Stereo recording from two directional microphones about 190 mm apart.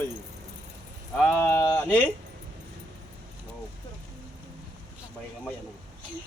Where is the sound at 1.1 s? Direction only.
5° left (ahead or behind).